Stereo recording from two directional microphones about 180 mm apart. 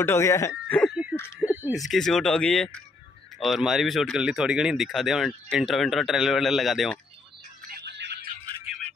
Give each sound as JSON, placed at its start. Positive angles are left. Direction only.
{"t": 0.0, "sound": "speech", "side_deg": 15}
{"t": 1.4, "sound": "a sound", "side_deg": -10}
{"t": 1.8, "sound": "speech", "side_deg": 0}
{"t": 7.8, "sound": "music", "side_deg": -70}